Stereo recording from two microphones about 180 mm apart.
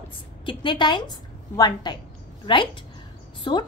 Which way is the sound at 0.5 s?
25° left (ahead or behind).